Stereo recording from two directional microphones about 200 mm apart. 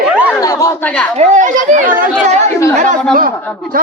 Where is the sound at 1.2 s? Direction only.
40° right (ahead or behind).